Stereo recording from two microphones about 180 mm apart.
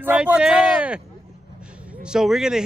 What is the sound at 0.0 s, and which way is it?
Speech, 5° right (ahead or behind).